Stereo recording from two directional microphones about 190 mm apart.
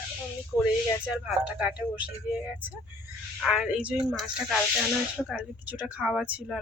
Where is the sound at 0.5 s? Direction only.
15° left (ahead or behind).